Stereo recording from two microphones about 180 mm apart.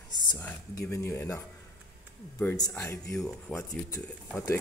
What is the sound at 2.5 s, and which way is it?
Speech, 20° left (ahead or behind).